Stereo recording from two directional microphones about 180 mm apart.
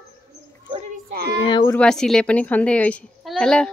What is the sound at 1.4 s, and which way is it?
Speech, 25° left (ahead or behind).